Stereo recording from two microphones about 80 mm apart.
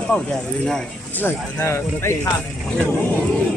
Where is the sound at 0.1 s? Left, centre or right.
Centre.